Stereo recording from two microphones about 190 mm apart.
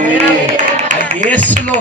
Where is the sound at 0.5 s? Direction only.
40° right (ahead or behind).